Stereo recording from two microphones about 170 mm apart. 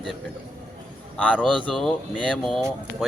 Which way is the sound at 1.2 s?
10° left (ahead or behind).